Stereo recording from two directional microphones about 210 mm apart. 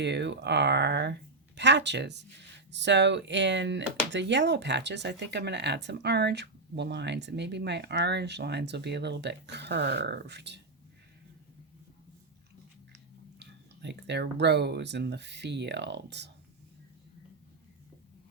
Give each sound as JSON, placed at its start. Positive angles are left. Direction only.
{"t": 0.0, "sound": "speech", "side_deg": -55}
{"t": 13.4, "sound": "speech", "side_deg": -55}